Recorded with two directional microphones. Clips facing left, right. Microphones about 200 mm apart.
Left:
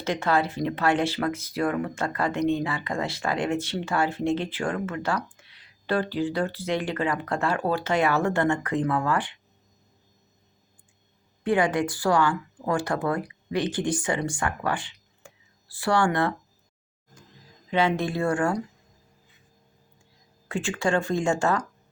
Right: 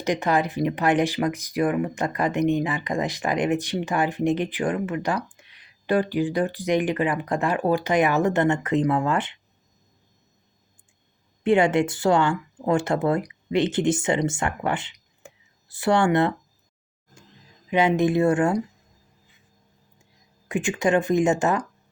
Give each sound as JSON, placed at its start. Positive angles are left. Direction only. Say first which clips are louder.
{"t": 0.0, "sound": "speech", "louder": "right 2 dB", "side_deg": -15}
{"t": 11.4, "sound": "speech", "louder": "right 4 dB", "side_deg": -25}
{"t": 17.7, "sound": "speech", "louder": "right 4 dB", "side_deg": -15}
{"t": 20.5, "sound": "speech", "louder": "right 4 dB", "side_deg": -15}